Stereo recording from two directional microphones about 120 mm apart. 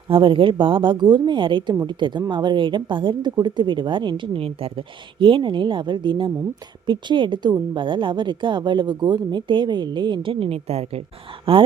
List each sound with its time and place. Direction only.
0.1 s a woman's voice: 45° right (ahead or behind)